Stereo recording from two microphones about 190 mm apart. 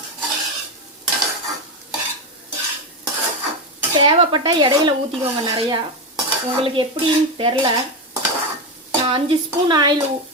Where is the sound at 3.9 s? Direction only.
25° right (ahead or behind).